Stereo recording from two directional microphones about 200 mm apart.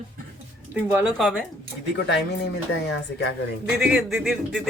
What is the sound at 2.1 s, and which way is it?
Speech, 60° left (ahead or behind).